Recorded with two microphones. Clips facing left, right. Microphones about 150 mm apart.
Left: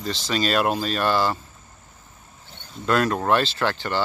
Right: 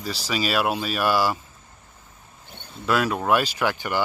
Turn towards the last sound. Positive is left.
turn(degrees=-10)  # may be behind; listen again after turning